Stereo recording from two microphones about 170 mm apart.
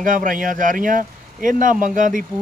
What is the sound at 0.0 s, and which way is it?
Speech, 50° right (ahead or behind).